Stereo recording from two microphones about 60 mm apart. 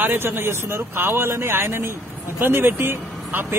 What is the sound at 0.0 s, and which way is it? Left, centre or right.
Speech, right.